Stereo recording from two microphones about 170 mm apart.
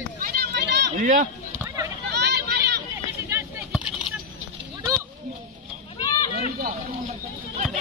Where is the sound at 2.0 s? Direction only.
80° right.